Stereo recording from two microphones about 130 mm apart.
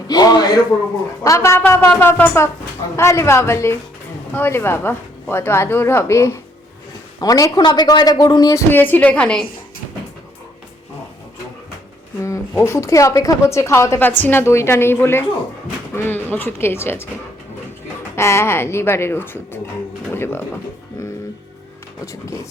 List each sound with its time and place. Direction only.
0.1 s a sound: 30° left (ahead or behind)
1.2 s a woman's voice: 20° left (ahead or behind)
8.7 s speech: 15° left (ahead or behind)
12.5 s a woman's voice: 20° left (ahead or behind)
18.2 s a woman's voice: 20° left (ahead or behind)
22.0 s a woman's voice: 25° left (ahead or behind)